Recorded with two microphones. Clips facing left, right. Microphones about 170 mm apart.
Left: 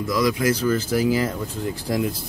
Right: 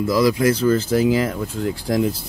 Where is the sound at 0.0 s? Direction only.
30° right (ahead or behind).